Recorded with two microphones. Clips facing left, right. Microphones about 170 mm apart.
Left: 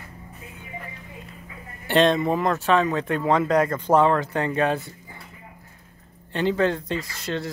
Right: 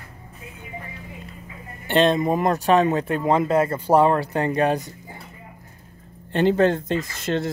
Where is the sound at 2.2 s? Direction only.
15° right (ahead or behind).